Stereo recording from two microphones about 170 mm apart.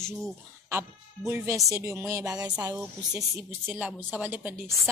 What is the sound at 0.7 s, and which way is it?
A woman's voice, 15° right (ahead or behind).